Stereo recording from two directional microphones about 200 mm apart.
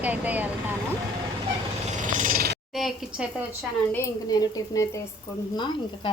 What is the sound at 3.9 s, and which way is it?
Speech, 15° left (ahead or behind).